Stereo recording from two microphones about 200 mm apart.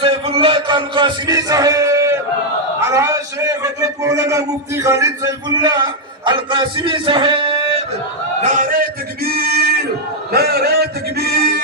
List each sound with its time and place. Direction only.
0.0 s music: 25° right (ahead or behind)
2.9 s a man's voice: 15° right (ahead or behind)
8.4 s a sound: 45° right (ahead or behind)